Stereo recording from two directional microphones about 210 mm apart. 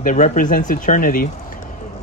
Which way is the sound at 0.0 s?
40° left (ahead or behind).